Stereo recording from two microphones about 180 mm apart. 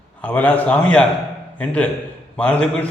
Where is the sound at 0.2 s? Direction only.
10° left (ahead or behind).